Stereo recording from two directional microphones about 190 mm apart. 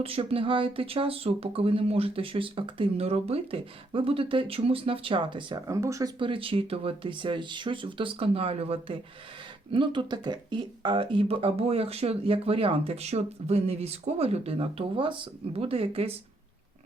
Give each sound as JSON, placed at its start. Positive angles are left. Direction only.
{"t": 0.0, "sound": "speech", "side_deg": -30}